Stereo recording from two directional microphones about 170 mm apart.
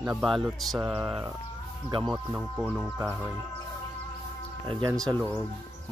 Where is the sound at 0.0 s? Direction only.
5° right (ahead or behind).